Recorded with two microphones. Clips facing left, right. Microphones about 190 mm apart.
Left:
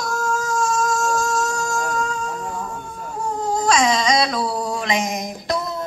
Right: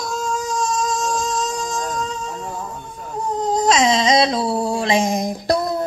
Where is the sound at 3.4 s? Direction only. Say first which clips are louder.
Right 2 dB; 20° right (ahead or behind).